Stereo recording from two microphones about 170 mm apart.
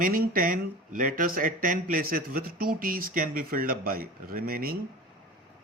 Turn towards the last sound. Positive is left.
turn(degrees=-60)  # may be behind; listen again after turning